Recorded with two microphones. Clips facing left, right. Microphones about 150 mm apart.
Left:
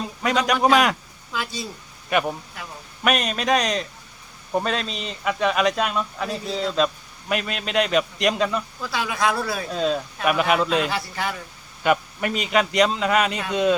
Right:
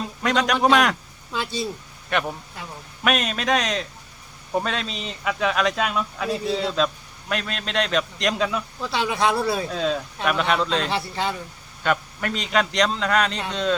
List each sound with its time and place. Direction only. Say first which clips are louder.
0.0 s a man's voice: even; centre (ahead or behind)
1.3 s speech: right 2 dB; 25° right (ahead or behind)
2.0 s a man's voice: left 3 dB; 5° left (ahead or behind)
8.8 s speech: right 3 dB; 25° right (ahead or behind)
9.6 s a man's voice: left 1 dB; centre (ahead or behind)
10.9 s speech: right 2 dB; 25° right (ahead or behind)
11.8 s a man's voice: left 3 dB; 10° left (ahead or behind)